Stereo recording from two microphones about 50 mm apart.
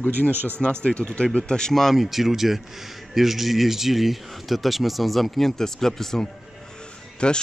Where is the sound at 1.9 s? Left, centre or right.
Centre.